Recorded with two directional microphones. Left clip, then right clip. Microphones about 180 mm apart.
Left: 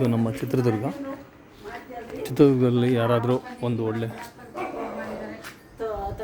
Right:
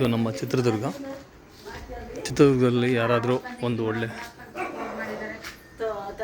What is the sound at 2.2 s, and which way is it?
Speech, 10° left (ahead or behind).